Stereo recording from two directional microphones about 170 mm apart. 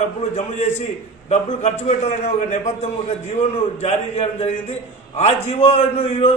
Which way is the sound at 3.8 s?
40° left (ahead or behind).